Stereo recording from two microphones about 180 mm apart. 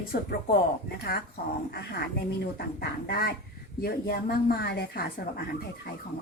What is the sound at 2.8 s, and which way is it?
A woman's voice, 60° left (ahead or behind).